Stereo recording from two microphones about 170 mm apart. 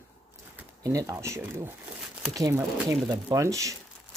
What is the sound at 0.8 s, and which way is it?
Speech, 20° right (ahead or behind).